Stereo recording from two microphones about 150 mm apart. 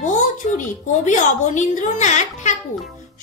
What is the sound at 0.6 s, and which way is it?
A woman's voice, 55° left (ahead or behind).